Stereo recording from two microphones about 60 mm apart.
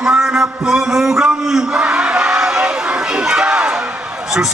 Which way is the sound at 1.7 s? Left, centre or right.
Centre.